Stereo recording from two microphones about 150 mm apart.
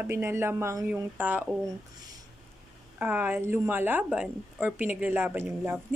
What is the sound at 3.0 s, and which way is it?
A woman's voice, 15° right (ahead or behind).